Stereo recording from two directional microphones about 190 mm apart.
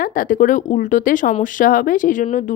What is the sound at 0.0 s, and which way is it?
Speech, 45° left (ahead or behind).